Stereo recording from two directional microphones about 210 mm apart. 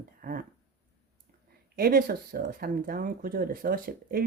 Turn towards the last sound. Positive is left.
turn(degrees=-45)  # may be behind; listen again after turning